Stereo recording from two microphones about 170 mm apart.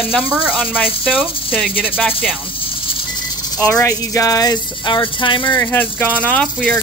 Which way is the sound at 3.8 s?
20° left (ahead or behind).